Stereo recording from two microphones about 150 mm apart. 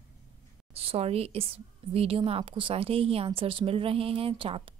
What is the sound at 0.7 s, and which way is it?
A woman's voice, 40° right (ahead or behind).